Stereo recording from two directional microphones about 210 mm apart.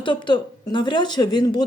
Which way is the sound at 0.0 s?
20° left (ahead or behind).